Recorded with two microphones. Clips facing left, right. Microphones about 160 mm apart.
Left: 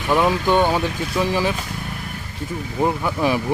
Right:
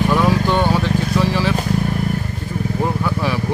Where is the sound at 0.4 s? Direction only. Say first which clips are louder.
Even; 15° left (ahead or behind).